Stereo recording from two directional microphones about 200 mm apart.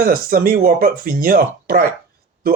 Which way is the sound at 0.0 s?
45° right (ahead or behind).